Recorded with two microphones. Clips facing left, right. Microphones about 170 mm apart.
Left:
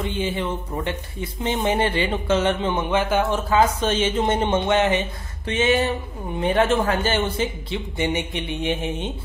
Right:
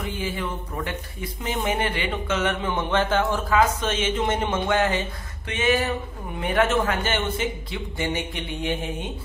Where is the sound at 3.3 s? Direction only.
30° left (ahead or behind).